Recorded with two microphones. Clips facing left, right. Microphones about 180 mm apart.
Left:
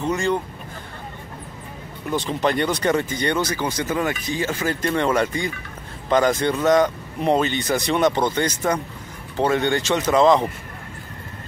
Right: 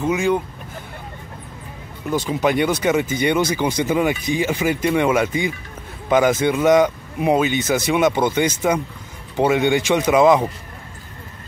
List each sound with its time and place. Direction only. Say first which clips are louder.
0.0 s speech: right 3 dB; 5° right (ahead or behind)
2.0 s speech: right 2 dB; 5° right (ahead or behind)